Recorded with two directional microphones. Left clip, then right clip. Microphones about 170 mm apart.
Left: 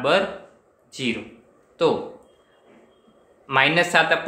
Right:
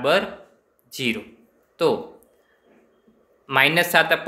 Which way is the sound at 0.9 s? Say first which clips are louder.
Right 1 dB; 45° right (ahead or behind).